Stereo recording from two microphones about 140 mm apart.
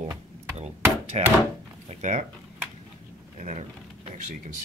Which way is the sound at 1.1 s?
50° right (ahead or behind).